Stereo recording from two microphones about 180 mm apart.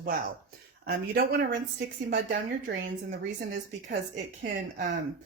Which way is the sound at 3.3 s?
80° right.